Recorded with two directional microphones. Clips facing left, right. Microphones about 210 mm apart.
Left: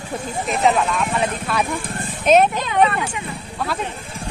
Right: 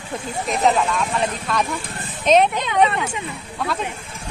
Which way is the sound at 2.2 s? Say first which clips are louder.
Left 1 dB; 5° left (ahead or behind).